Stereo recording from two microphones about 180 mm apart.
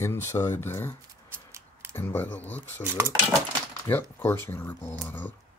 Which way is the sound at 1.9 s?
10° left (ahead or behind).